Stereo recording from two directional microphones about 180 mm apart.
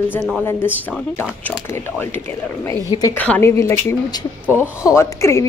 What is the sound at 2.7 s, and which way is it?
Speech, 20° left (ahead or behind).